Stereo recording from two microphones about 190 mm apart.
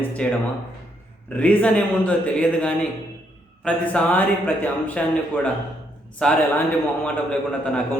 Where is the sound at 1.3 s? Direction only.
10° left (ahead or behind).